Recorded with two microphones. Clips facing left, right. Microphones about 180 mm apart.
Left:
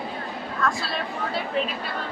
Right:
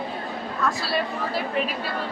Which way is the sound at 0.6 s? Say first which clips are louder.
Right 2 dB; 5° right (ahead or behind).